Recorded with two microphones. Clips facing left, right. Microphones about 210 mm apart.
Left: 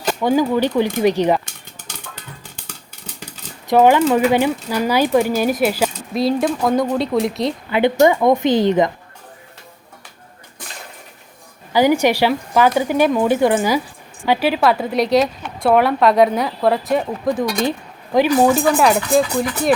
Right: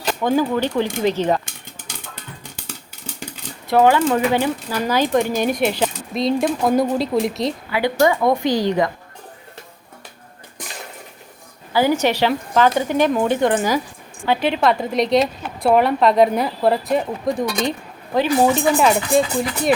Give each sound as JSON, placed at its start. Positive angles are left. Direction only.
{"t": 0.2, "sound": "speech", "side_deg": 10}
{"t": 3.7, "sound": "speech", "side_deg": 15}
{"t": 7.7, "sound": "a woman's voice", "side_deg": 20}
{"t": 11.7, "sound": "speech", "side_deg": 15}
{"t": 18.1, "sound": "speech", "side_deg": 10}
{"t": 18.8, "sound": "speech", "side_deg": 0}